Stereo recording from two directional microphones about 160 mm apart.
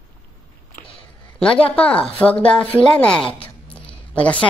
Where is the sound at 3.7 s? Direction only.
10° left (ahead or behind).